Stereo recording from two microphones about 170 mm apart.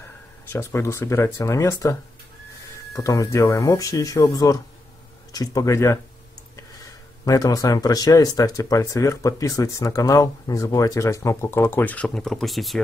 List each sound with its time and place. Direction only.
0.5 s speech: 15° left (ahead or behind)
3.0 s speech: 20° left (ahead or behind)
7.2 s speech: 20° left (ahead or behind); by 12.8 s centre (ahead or behind)